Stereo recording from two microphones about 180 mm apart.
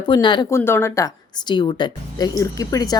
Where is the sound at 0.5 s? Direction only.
15° left (ahead or behind).